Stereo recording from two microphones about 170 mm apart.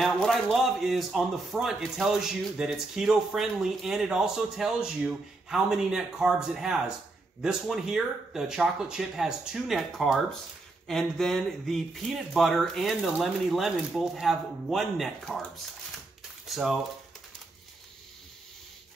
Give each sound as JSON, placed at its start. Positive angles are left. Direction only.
{"t": 0.0, "sound": "a man's voice", "side_deg": 0}